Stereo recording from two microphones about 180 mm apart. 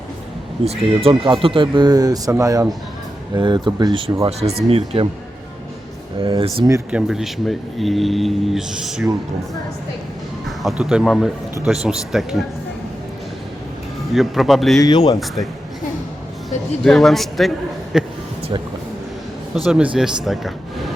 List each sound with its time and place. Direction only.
0.6 s speech: 35° right (ahead or behind)
6.2 s speech: 30° right (ahead or behind)
6.9 s speech: centre (ahead or behind)
10.6 s speech: centre (ahead or behind)
14.1 s speech: centre (ahead or behind)
14.8 s speech: 25° left (ahead or behind)
16.8 s speech: centre (ahead or behind)
19.6 s speech: 5° right (ahead or behind)